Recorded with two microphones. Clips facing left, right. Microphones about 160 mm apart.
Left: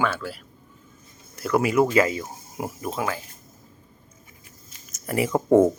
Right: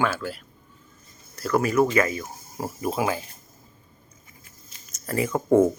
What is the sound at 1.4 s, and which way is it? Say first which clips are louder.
Speech: left 1 dB; 15° left (ahead or behind).